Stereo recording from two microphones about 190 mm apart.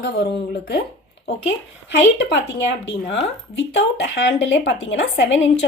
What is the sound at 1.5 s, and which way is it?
A woman's voice, 70° left (ahead or behind).